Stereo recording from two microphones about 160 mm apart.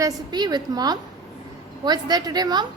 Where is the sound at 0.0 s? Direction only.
25° right (ahead or behind).